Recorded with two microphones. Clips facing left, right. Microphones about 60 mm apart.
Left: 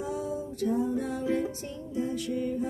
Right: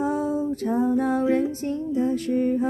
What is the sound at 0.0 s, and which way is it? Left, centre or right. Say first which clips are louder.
Music: right 9 dB; right.